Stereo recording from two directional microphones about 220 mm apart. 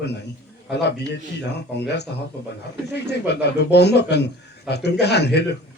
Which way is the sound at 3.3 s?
50° left (ahead or behind).